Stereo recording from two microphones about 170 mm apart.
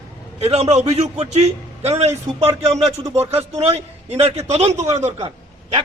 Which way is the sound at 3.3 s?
35° right (ahead or behind).